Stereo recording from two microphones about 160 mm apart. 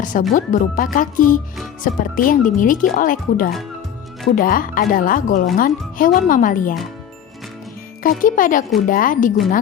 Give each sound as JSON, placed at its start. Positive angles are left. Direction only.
{"t": 0.0, "sound": "speech", "side_deg": 55}
{"t": 8.2, "sound": "speech", "side_deg": 55}